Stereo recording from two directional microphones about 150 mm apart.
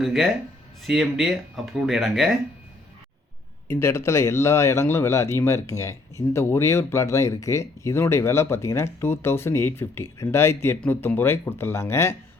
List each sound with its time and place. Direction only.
0.0 s speech: centre (ahead or behind)
3.7 s speech: 15° left (ahead or behind)